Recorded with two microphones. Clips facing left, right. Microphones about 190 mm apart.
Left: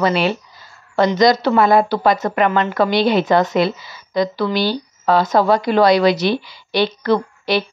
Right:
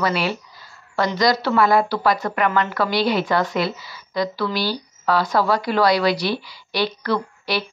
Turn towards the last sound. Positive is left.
turn(degrees=20)  # may be behind; listen again after turning